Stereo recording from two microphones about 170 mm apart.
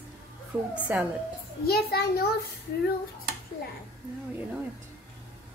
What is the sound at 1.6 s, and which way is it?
Speech, 65° left (ahead or behind).